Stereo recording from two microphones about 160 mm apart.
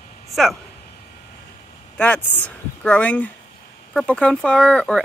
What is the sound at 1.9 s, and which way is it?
Speech, 10° left (ahead or behind).